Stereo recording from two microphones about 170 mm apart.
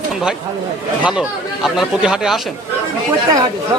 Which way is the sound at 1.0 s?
5° right (ahead or behind).